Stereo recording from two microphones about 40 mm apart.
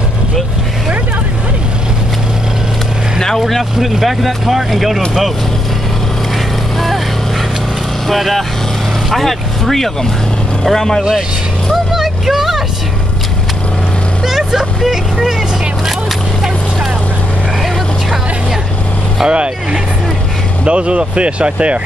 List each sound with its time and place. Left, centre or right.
3.2 s speech: centre
8.1 s speech: centre
11.7 s vehicle: centre
14.2 s vehicle: centre
19.2 s speech: right